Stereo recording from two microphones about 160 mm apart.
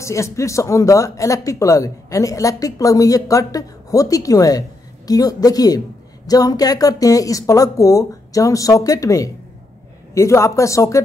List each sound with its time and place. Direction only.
0.0 s speech: 20° left (ahead or behind)